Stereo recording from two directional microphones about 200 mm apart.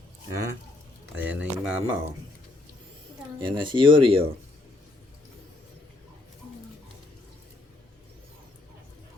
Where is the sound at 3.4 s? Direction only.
25° right (ahead or behind).